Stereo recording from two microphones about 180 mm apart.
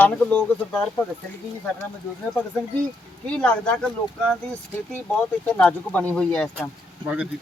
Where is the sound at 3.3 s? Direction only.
5° left (ahead or behind).